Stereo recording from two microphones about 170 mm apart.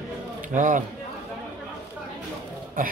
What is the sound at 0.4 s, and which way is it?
Speech, 50° right (ahead or behind).